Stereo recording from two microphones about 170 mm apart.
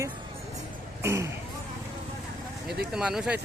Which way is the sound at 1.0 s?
15° right (ahead or behind).